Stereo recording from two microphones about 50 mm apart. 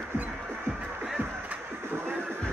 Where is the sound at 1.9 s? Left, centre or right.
Right.